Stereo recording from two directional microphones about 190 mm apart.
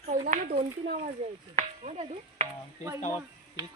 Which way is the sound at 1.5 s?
35° right (ahead or behind).